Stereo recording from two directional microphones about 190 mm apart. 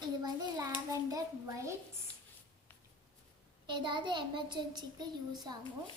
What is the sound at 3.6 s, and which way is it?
A child's voice, 25° right (ahead or behind).